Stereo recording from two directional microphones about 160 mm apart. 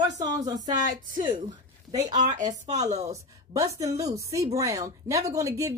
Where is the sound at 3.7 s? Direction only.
20° right (ahead or behind).